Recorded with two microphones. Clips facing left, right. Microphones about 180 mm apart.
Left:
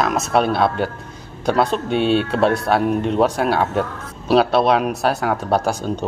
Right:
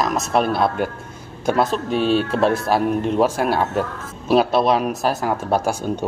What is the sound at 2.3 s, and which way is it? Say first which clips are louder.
Speech: left 1 dB; centre (ahead or behind).